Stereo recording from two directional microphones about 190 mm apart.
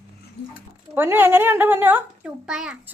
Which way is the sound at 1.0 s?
10° right (ahead or behind).